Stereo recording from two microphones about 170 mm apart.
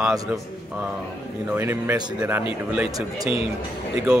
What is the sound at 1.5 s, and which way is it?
Speech, 15° right (ahead or behind).